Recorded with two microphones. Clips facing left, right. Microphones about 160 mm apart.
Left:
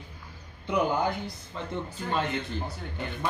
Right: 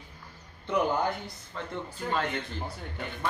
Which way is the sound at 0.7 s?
15° left (ahead or behind).